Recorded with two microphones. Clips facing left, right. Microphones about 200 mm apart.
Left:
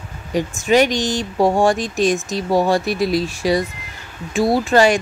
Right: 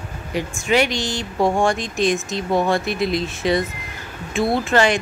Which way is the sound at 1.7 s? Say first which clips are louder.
Left 2 dB; 40° left (ahead or behind).